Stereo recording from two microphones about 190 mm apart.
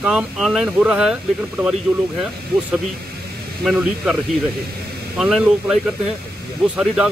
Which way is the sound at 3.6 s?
5° right (ahead or behind).